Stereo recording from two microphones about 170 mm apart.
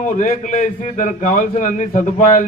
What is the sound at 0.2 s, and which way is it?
A man's voice, 45° left (ahead or behind).